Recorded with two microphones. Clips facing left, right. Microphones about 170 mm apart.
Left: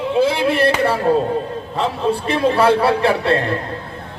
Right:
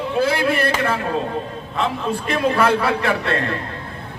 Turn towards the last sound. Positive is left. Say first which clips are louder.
# left 5 dB
turn(degrees=30)  # may be behind; listen again after turning